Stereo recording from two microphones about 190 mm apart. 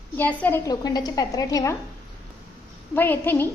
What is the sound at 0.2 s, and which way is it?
A woman's voice, 10° left (ahead or behind).